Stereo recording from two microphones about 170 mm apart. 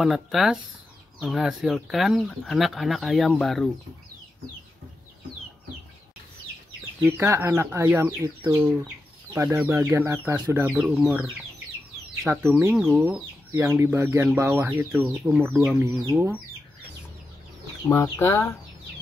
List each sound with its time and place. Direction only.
0.0 s speech: centre (ahead or behind)
7.0 s speech: 15° right (ahead or behind)
12.3 s speech: 15° right (ahead or behind)
12.7 s speech: 5° right (ahead or behind)
17.8 s speech: 15° left (ahead or behind)